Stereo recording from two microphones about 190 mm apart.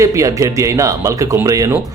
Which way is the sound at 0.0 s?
15° right (ahead or behind).